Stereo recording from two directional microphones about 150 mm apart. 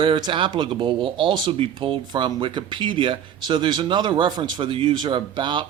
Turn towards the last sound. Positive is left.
turn(degrees=-30)  # may be behind; listen again after turning